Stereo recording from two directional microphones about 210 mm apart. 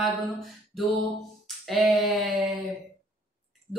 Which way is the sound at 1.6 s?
Centre (ahead or behind).